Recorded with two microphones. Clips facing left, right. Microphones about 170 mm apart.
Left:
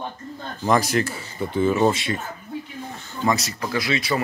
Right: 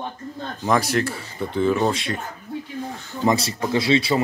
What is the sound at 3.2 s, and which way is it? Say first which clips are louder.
Speech: right 3 dB; 25° right (ahead or behind).